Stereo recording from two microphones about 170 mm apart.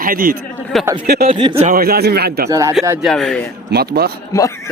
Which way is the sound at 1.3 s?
30° right (ahead or behind).